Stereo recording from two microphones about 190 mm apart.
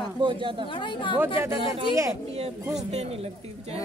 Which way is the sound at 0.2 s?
25° right (ahead or behind).